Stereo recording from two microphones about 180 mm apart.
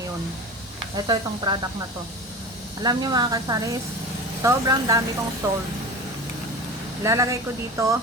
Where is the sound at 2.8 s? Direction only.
20° right (ahead or behind).